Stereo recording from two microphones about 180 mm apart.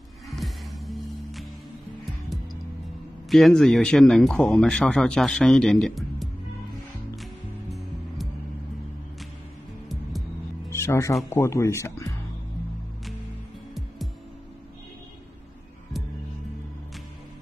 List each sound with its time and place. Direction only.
0.3 s music: centre (ahead or behind)
3.3 s speech: centre (ahead or behind)
10.7 s music: 15° left (ahead or behind)
11.2 s speech: 15° left (ahead or behind)